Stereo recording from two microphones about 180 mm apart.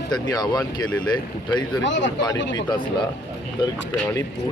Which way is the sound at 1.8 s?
90° left.